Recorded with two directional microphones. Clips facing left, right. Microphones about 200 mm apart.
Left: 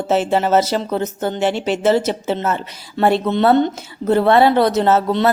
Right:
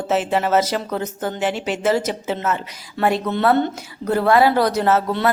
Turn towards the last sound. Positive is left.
turn(degrees=25)  # may be behind; listen again after turning